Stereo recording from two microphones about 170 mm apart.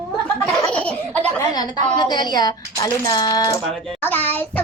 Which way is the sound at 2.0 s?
25° left (ahead or behind).